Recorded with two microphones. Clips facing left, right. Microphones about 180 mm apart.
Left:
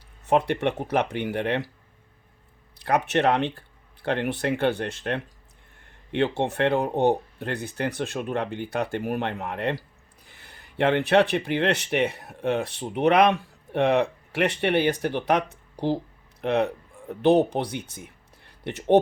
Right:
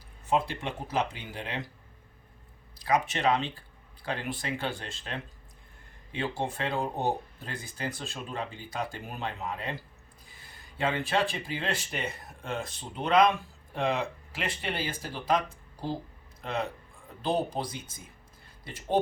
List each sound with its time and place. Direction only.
0.3 s speech: 65° left (ahead or behind)
2.7 s speech: 65° left (ahead or behind)
6.3 s speech: 70° left (ahead or behind)